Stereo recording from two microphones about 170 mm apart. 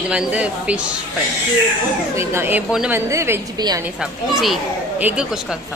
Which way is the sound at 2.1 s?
15° right (ahead or behind).